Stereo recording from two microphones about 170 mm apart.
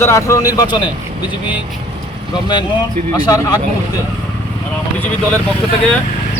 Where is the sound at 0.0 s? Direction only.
15° left (ahead or behind).